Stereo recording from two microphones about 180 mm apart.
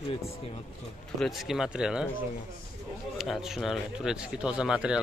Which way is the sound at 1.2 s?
Centre (ahead or behind).